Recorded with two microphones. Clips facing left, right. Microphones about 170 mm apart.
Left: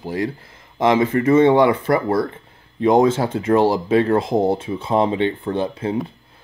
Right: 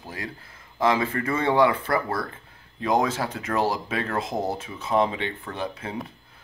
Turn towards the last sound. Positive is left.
turn(degrees=30)  # may be behind; listen again after turning